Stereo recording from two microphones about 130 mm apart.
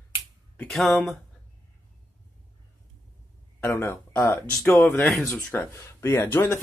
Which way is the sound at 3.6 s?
20° left (ahead or behind).